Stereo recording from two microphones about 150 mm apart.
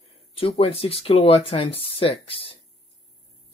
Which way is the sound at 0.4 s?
40° left (ahead or behind).